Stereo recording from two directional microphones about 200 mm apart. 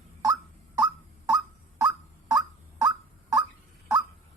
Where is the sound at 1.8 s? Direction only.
20° right (ahead or behind).